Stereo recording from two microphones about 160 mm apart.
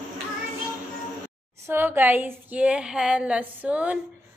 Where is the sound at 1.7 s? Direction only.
15° right (ahead or behind).